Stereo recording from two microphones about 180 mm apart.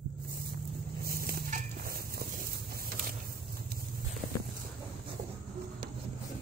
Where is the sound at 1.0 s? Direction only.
55° right (ahead or behind).